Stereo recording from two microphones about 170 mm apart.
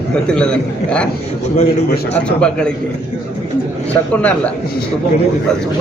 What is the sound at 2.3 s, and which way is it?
Speech, 5° left (ahead or behind).